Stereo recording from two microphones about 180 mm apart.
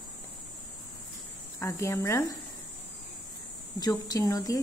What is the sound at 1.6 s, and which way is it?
Speech, 15° left (ahead or behind).